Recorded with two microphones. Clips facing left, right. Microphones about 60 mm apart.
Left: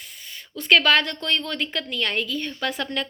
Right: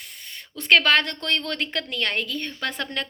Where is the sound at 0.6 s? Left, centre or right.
Right.